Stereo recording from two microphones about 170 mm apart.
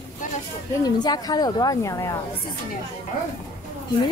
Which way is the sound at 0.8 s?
25° left (ahead or behind).